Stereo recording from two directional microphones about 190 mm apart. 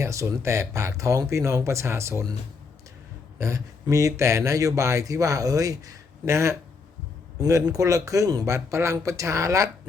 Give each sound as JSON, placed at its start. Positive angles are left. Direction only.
{"t": 0.0, "sound": "speech", "side_deg": -15}
{"t": 3.3, "sound": "speech", "side_deg": -15}